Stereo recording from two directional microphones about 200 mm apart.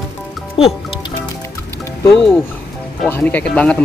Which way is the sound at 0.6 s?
30° left (ahead or behind).